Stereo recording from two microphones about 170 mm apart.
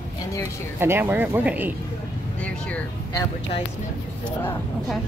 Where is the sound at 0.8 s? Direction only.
10° right (ahead or behind).